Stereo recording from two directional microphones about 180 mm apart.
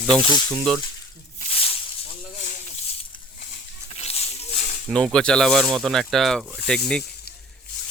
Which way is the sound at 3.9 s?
35° left (ahead or behind).